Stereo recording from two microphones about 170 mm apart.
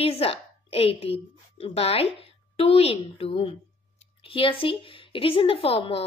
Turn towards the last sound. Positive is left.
turn(degrees=35)  # may be behind; listen again after turning